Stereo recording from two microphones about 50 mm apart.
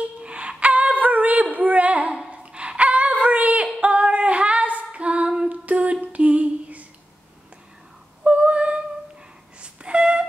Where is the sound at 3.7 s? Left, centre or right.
Right.